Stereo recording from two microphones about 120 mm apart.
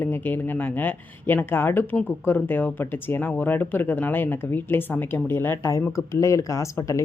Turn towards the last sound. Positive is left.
turn(degrees=25)  # may be behind; listen again after turning